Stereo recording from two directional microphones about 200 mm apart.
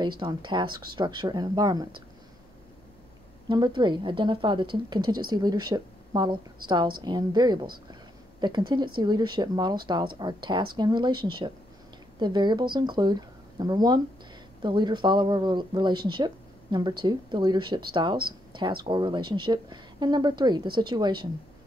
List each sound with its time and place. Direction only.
0.0 s speech: 20° right (ahead or behind)
3.4 s speech: 20° right (ahead or behind)